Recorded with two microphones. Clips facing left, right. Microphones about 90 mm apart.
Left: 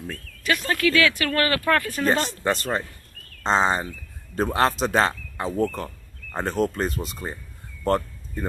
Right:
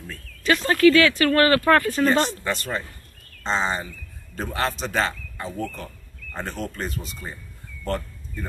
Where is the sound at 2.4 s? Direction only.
40° left (ahead or behind).